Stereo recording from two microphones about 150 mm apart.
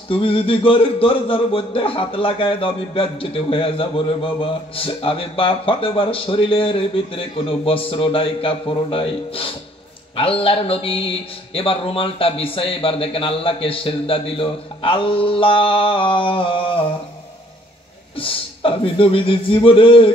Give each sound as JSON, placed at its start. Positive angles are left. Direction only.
{"t": 0.1, "sound": "a man's voice", "side_deg": 35}
{"t": 18.1, "sound": "a man's voice", "side_deg": 35}